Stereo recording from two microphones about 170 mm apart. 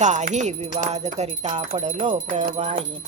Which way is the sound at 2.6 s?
40° right (ahead or behind).